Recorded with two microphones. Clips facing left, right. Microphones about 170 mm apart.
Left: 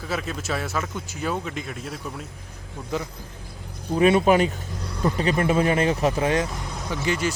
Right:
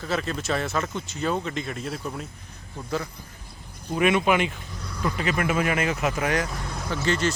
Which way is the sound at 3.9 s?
30° left (ahead or behind).